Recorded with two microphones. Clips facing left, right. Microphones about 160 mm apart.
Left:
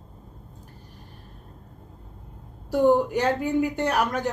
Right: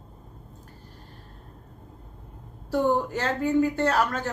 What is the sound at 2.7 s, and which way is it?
A woman's voice, 15° left (ahead or behind).